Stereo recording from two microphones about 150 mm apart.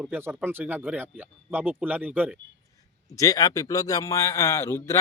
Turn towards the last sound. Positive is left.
turn(degrees=20)  # may be behind; listen again after turning